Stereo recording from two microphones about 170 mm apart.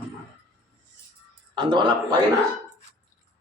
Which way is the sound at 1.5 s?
25° right (ahead or behind).